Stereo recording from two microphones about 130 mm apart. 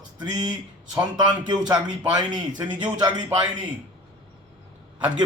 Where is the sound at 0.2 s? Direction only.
30° right (ahead or behind).